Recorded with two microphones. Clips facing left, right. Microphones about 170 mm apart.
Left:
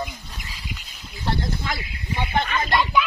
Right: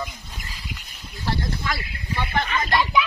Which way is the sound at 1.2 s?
25° left (ahead or behind).